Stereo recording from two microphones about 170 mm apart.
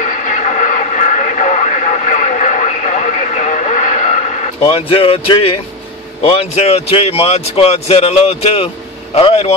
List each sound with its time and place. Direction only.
0.0 s radio: 50° left (ahead or behind); by 5.5 s 35° left (ahead or behind)
6.2 s speech: 35° left (ahead or behind)